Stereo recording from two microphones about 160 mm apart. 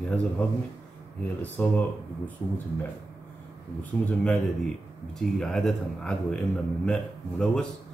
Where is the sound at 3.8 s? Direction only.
10° left (ahead or behind).